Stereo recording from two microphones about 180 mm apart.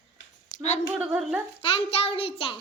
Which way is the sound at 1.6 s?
30° left (ahead or behind).